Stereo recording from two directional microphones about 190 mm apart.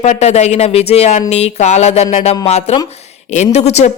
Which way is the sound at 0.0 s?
35° left (ahead or behind).